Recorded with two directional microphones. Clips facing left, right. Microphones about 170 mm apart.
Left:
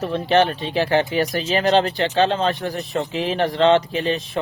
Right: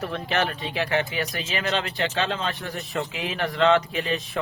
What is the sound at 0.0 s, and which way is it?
Speech, 30° left (ahead or behind).